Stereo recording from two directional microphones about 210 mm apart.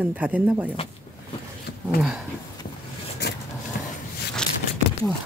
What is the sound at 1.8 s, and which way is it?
Speech, centre (ahead or behind).